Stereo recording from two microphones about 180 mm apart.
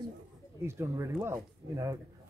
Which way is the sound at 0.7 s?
15° right (ahead or behind).